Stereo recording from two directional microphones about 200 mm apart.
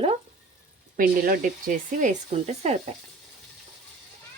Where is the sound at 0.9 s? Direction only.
45° right (ahead or behind).